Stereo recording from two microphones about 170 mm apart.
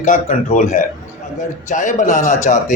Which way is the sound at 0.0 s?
50° left (ahead or behind).